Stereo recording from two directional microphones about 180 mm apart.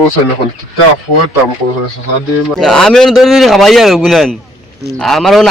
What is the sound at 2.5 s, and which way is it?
Speech, centre (ahead or behind).